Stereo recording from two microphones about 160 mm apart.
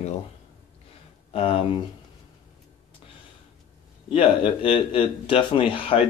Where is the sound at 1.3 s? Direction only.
35° left (ahead or behind).